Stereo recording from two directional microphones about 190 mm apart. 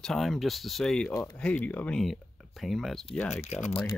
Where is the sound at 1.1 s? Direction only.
20° left (ahead or behind).